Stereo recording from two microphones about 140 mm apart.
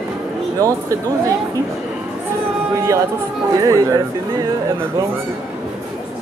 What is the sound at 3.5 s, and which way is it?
Speech, 25° right (ahead or behind).